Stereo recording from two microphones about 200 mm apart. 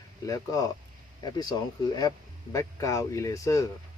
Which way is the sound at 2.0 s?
15° left (ahead or behind).